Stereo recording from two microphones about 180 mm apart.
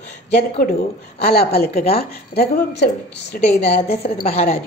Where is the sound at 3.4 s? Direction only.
35° left (ahead or behind).